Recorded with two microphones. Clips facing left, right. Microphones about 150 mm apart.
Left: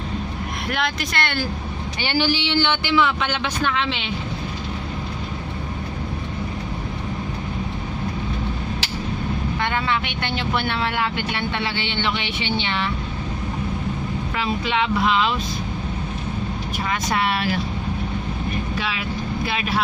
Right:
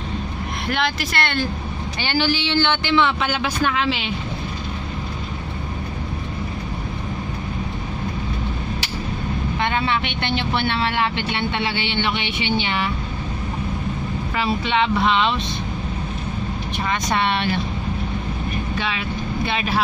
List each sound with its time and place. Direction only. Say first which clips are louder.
0.7 s speech: right 2 dB; centre (ahead or behind)
2.0 s speech: even; 15° left (ahead or behind); by 4.1 s 5° right (ahead or behind)
9.6 s speech: right 3 dB; 20° right (ahead or behind)
14.3 s speech: right 3 dB; centre (ahead or behind)
16.8 s speech: right 1 dB; 5° left (ahead or behind)
18.8 s speech: right 1 dB; centre (ahead or behind)